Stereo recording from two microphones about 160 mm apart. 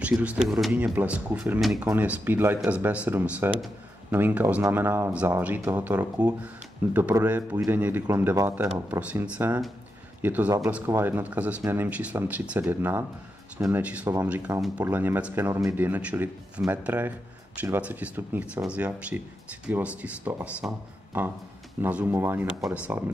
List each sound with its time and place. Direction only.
0.0 s speech: 10° right (ahead or behind)